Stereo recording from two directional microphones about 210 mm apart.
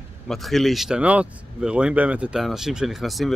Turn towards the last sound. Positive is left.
turn(degrees=0)  # may be behind; listen again after turning